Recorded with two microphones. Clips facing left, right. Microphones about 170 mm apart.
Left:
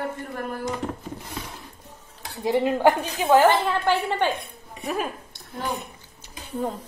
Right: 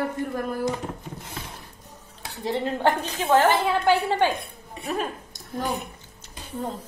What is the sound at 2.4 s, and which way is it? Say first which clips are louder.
Speech: left 4 dB; 10° left (ahead or behind).